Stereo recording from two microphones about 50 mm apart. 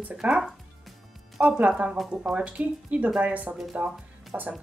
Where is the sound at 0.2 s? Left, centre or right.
Right.